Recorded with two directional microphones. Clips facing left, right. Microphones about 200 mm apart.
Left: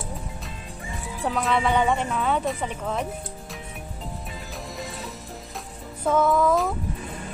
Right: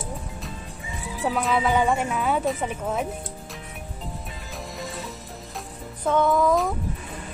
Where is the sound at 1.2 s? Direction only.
Centre (ahead or behind).